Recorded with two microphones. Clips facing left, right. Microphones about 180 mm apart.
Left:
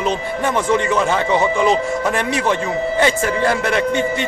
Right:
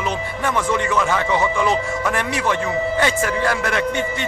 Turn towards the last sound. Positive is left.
turn(degrees=20)  # may be behind; listen again after turning